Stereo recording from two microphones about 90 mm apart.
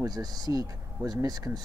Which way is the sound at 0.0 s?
45° right (ahead or behind).